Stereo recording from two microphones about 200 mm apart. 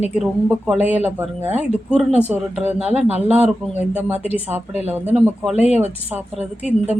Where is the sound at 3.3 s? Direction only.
10° right (ahead or behind).